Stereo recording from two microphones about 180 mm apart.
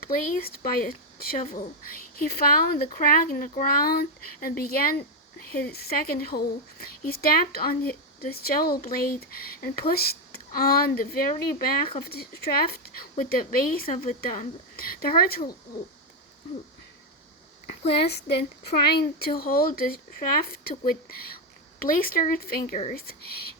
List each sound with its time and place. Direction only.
0.0 s speech: 55° left (ahead or behind)
18.3 s speech: 45° left (ahead or behind)
18.9 s speech: 60° left (ahead or behind)